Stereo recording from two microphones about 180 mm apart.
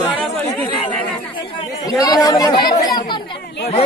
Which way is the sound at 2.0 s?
20° left (ahead or behind).